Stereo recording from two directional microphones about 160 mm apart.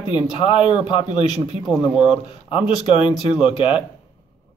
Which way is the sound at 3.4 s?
30° left (ahead or behind).